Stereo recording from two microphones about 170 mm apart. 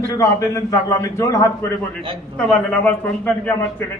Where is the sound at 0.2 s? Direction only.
20° left (ahead or behind).